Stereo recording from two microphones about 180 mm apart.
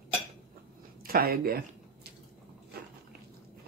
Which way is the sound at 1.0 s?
55° right (ahead or behind).